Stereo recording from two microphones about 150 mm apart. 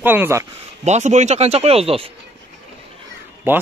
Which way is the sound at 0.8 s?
50° right (ahead or behind).